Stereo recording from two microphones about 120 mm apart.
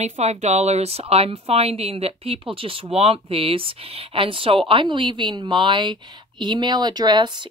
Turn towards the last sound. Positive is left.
turn(degrees=-35)  # may be behind; listen again after turning